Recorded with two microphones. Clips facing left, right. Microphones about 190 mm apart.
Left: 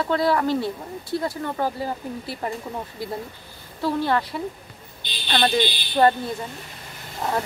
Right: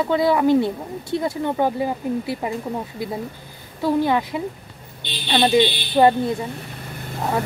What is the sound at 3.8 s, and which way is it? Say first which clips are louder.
Speech: right 4 dB; 15° right (ahead or behind).